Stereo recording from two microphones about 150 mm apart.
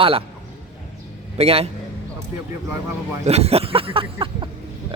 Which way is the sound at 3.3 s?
45° right (ahead or behind).